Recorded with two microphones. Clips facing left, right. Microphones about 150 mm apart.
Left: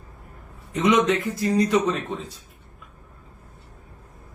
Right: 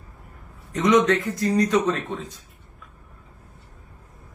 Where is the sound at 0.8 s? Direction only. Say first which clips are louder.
Right 1 dB; 5° left (ahead or behind).